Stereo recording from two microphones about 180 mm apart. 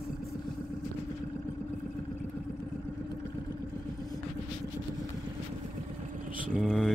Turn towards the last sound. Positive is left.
turn(degrees=0)  # may be behind; listen again after turning